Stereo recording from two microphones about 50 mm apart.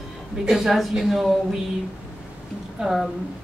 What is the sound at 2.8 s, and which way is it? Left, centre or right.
Speech, centre.